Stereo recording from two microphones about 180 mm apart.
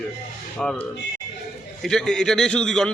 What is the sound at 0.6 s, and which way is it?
A man's voice, 5° left (ahead or behind).